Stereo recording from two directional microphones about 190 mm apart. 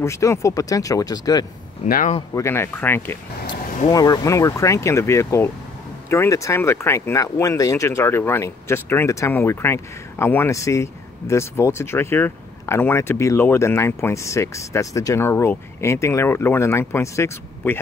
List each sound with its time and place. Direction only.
0.0 s speech: 15° left (ahead or behind)
1.9 s speech: 45° left (ahead or behind)
2.3 s speech: 15° left (ahead or behind)